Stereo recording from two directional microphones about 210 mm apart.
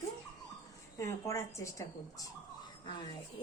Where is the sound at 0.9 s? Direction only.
15° left (ahead or behind).